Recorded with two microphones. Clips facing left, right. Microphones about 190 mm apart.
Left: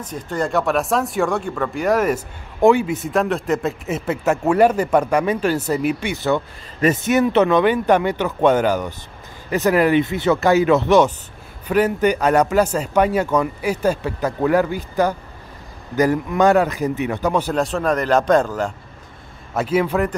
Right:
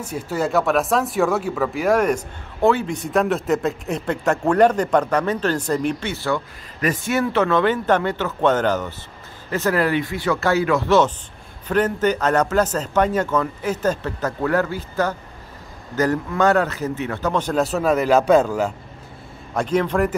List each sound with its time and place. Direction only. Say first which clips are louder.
0.0 s speech: even; 5° right (ahead or behind); by 3.0 s 15° left (ahead or behind)
3.0 s speech: even; centre (ahead or behind)
17.6 s speech: right 1 dB; 5° right (ahead or behind)
19.5 s speech: left 1 dB; 5° left (ahead or behind)